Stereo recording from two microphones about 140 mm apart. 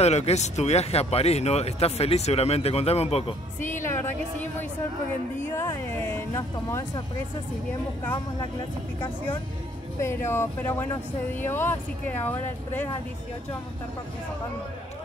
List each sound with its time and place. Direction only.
0.0 s speech: 50° left (ahead or behind)
3.6 s speech: 15° left (ahead or behind)
9.9 s speech: 20° left (ahead or behind)